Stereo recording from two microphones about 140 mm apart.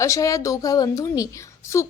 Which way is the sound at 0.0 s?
25° left (ahead or behind).